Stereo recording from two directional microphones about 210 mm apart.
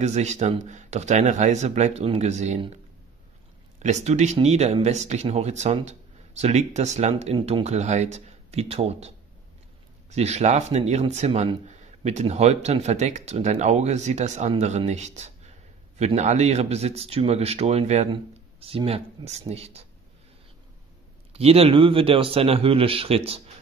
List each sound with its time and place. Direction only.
0.0 s speech: 35° right (ahead or behind)
3.8 s speech: 35° right (ahead or behind)
21.3 s speech: 30° right (ahead or behind)